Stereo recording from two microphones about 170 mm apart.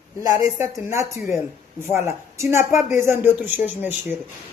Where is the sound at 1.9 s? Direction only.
15° right (ahead or behind).